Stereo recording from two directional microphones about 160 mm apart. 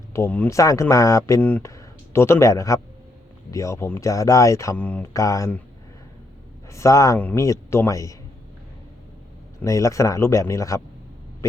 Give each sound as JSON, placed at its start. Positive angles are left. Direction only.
{"t": 0.1, "sound": "speech", "side_deg": 15}
{"t": 5.2, "sound": "speech", "side_deg": 20}
{"t": 6.7, "sound": "speech", "side_deg": 20}
{"t": 9.6, "sound": "speech", "side_deg": 20}